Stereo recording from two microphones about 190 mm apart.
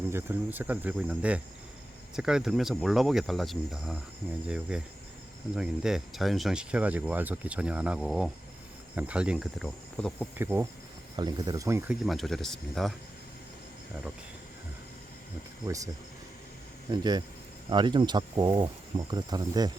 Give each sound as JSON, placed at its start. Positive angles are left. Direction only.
{"t": 0.1, "sound": "speech", "side_deg": -10}
{"t": 10.3, "sound": "speech", "side_deg": -10}
{"t": 11.9, "sound": "speech", "side_deg": 0}
{"t": 16.9, "sound": "speech", "side_deg": -20}